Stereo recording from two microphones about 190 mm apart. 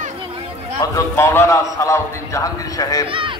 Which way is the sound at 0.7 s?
15° left (ahead or behind).